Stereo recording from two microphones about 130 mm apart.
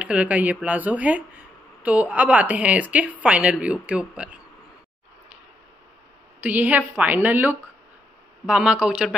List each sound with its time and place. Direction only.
0.0 s speech: 10° right (ahead or behind)
6.4 s speech: 15° right (ahead or behind)